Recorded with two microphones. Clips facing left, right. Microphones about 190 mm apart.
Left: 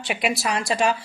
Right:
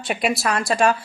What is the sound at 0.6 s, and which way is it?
Speech, 50° right (ahead or behind).